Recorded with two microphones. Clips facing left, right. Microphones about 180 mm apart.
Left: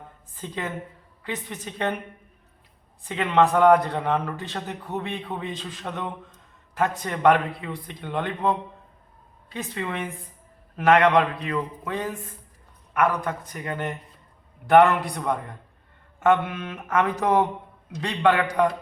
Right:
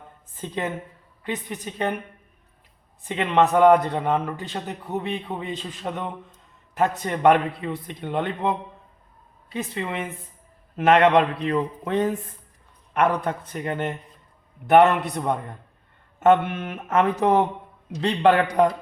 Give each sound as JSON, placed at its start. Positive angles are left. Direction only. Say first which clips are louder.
{"t": 0.3, "sound": "a man's voice", "louder": "right 3 dB", "side_deg": -20}
{"t": 3.1, "sound": "a man's voice", "louder": "right 1 dB", "side_deg": -20}